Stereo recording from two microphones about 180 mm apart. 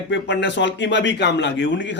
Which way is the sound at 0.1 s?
75° left (ahead or behind).